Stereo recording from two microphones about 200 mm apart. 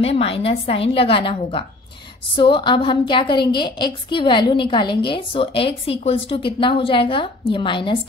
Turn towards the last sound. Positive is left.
turn(degrees=25)  # may be behind; listen again after turning